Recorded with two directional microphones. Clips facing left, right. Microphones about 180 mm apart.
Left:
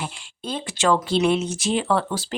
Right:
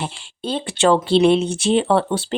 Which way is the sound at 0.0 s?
30° right (ahead or behind).